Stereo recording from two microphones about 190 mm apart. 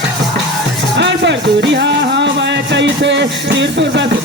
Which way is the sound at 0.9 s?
65° right (ahead or behind).